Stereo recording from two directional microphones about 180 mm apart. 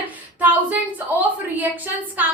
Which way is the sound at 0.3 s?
10° right (ahead or behind).